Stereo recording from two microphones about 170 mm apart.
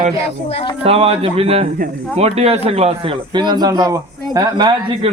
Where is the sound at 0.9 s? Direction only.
35° right (ahead or behind).